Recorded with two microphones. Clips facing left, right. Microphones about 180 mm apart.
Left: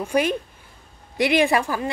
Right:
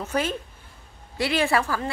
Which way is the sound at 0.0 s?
15° left (ahead or behind).